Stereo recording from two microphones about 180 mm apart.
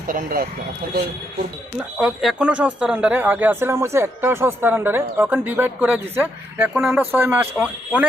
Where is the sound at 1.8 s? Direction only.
5° right (ahead or behind).